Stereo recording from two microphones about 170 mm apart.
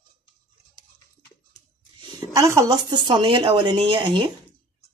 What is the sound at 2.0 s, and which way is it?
Speech, 20° right (ahead or behind).